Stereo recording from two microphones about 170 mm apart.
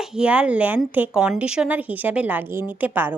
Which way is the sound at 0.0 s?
5° right (ahead or behind).